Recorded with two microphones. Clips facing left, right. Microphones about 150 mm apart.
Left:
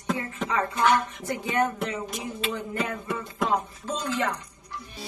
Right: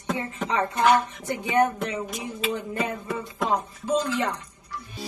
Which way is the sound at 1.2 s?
20° right (ahead or behind).